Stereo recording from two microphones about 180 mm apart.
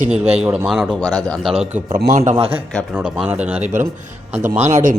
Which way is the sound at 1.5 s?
40° right (ahead or behind).